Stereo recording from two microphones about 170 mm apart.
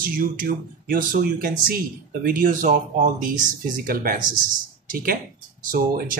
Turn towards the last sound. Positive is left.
turn(degrees=-55)  # may be behind; listen again after turning